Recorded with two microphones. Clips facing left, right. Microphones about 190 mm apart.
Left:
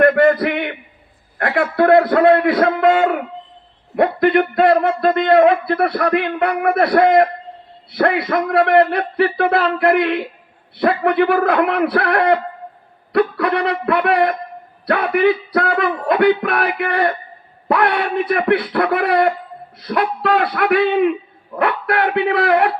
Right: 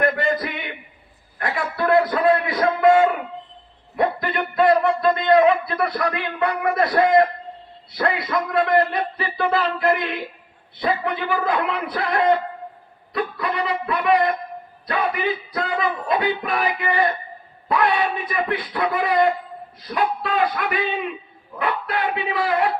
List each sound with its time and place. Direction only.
0.0 s a man's voice: 60° left (ahead or behind)